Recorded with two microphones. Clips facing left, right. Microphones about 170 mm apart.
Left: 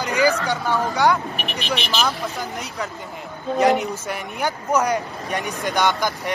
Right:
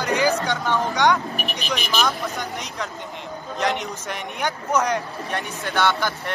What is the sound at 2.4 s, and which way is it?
Speech, 5° left (ahead or behind).